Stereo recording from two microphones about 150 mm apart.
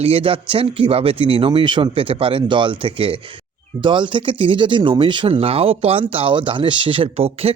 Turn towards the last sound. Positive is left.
turn(degrees=-40)  # may be behind; listen again after turning